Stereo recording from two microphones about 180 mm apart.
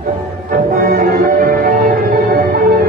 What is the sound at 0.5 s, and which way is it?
Music, 50° right (ahead or behind).